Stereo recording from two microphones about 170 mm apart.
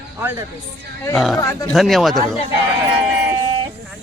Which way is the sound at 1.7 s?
Centre (ahead or behind).